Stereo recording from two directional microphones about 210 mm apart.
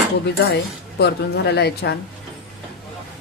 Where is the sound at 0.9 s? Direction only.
50° left (ahead or behind).